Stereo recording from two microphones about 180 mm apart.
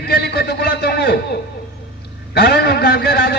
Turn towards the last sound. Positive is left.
turn(degrees=65)  # may be behind; listen again after turning